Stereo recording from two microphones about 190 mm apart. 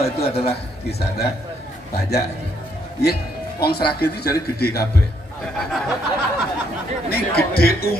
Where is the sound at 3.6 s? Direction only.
55° left (ahead or behind).